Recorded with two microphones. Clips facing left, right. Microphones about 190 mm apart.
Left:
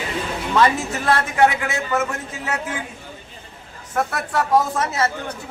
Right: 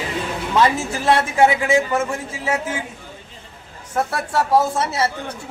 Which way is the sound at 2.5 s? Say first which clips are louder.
Right 3 dB; 25° right (ahead or behind).